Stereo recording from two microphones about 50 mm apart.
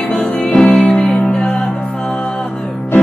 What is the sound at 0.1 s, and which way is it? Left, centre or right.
Music, left.